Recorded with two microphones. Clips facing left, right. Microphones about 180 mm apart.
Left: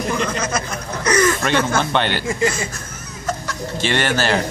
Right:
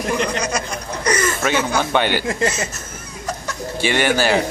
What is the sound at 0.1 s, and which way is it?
Chuckle, 15° right (ahead or behind).